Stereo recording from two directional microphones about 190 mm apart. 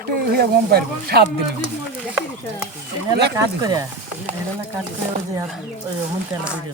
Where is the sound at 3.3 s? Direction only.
20° right (ahead or behind).